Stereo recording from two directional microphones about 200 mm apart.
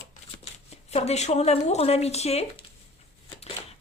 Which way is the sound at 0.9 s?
30° left (ahead or behind).